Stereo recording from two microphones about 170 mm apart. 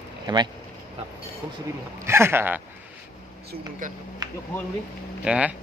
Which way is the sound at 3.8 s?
50° right (ahead or behind).